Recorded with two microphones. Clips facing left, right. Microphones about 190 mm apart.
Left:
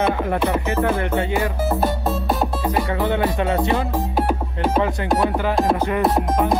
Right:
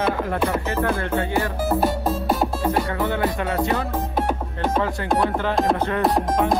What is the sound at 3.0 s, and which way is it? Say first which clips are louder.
Music: left 3 dB; 20° left (ahead or behind).